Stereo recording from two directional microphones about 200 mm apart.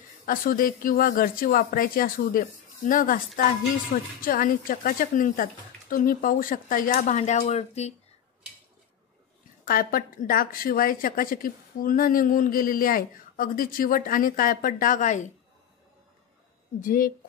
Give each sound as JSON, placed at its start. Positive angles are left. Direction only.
{"t": 0.2, "sound": "a woman's voice", "side_deg": 45}
{"t": 9.7, "sound": "a woman's voice", "side_deg": 45}
{"t": 16.8, "sound": "a woman's voice", "side_deg": 45}